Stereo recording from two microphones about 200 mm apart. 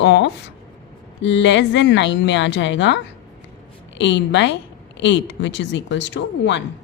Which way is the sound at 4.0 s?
60° left (ahead or behind).